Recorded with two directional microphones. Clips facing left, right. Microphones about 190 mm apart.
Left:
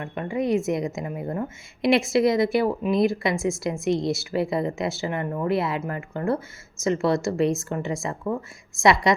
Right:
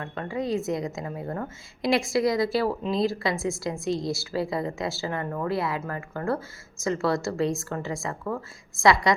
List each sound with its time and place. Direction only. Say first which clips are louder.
0.0 s a woman's voice: left 4 dB; 20° left (ahead or behind)